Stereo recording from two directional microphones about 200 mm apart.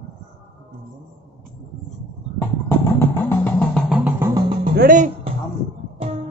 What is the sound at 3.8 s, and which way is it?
Music, centre (ahead or behind).